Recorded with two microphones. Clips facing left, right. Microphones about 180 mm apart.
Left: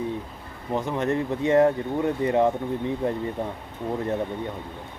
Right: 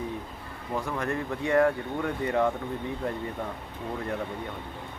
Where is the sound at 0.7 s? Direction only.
20° left (ahead or behind).